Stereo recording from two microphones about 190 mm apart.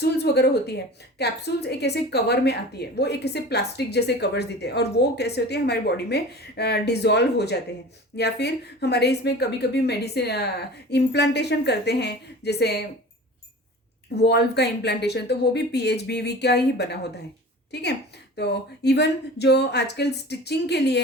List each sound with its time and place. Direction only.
0.0 s a woman's voice: 60° left (ahead or behind)
14.2 s a woman's voice: 60° left (ahead or behind)
18.3 s a woman's voice: 60° left (ahead or behind)